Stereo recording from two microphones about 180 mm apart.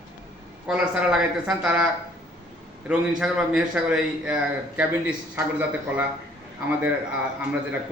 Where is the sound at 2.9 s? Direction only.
5° right (ahead or behind).